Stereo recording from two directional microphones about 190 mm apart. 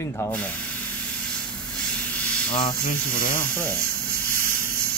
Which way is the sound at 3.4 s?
10° left (ahead or behind).